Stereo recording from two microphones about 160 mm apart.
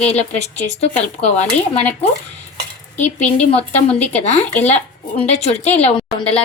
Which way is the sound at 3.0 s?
45° left (ahead or behind).